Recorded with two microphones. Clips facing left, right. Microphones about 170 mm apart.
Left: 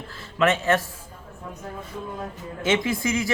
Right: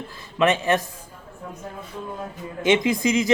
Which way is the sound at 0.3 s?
15° right (ahead or behind).